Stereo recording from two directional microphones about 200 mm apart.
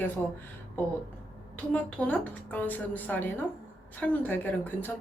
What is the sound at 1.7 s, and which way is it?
Speech, 5° left (ahead or behind).